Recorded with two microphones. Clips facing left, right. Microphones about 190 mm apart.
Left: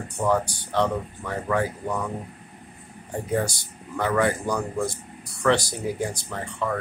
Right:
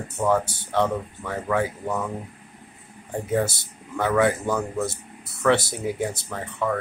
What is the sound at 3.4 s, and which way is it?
Speech, 25° right (ahead or behind).